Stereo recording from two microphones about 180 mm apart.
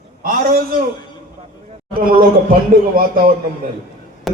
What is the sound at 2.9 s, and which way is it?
Speech, 55° right (ahead or behind).